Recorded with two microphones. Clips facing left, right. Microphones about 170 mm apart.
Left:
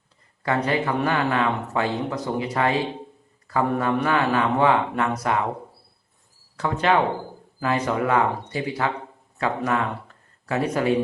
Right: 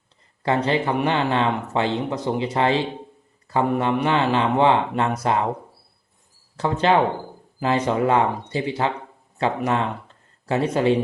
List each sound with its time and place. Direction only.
0.4 s speech: 25° right (ahead or behind)
6.6 s speech: 30° right (ahead or behind)